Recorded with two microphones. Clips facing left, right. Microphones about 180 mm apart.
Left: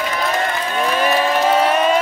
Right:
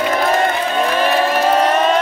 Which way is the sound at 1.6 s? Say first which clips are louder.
Right 1 dB; 10° left (ahead or behind).